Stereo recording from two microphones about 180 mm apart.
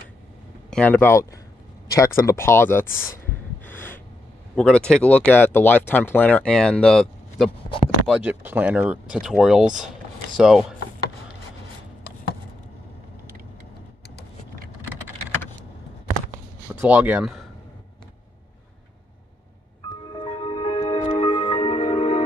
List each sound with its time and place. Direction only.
0.7 s speech: 5° left (ahead or behind)
3.6 s snort: 10° left (ahead or behind)
4.6 s speech: 5° left (ahead or behind)
8.1 s speech: 10° right (ahead or behind)
16.8 s speech: 10° right (ahead or behind)
20.2 s music: 30° left (ahead or behind)